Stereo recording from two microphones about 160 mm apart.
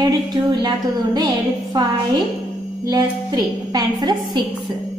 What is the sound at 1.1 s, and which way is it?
Speech, 25° right (ahead or behind).